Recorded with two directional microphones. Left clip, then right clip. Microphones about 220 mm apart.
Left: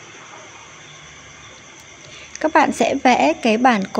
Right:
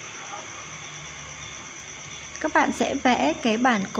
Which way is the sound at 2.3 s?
30° left (ahead or behind).